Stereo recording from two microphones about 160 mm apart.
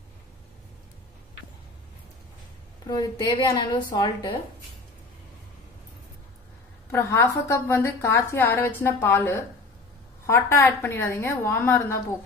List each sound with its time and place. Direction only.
2.9 s a woman's voice: 25° left (ahead or behind)
6.9 s a woman's voice: 15° left (ahead or behind)